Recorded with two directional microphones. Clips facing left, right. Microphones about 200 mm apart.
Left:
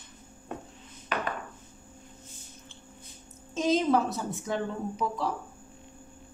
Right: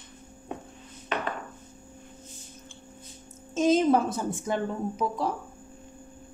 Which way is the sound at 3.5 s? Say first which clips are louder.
Right 3 dB; 50° right (ahead or behind).